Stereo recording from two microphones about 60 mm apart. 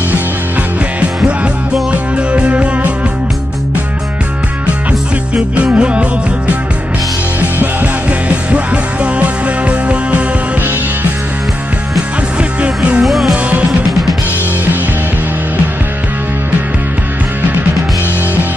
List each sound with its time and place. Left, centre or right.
1.2 s music: centre
5.3 s music: right
7.3 s music: right
12.4 s music: centre
13.0 s music: centre